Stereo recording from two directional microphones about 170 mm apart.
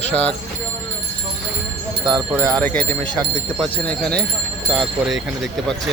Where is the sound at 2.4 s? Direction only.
20° right (ahead or behind).